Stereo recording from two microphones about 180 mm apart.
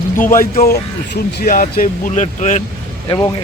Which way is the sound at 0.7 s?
60° left (ahead or behind).